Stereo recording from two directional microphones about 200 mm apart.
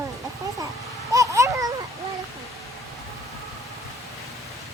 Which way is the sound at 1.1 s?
15° right (ahead or behind).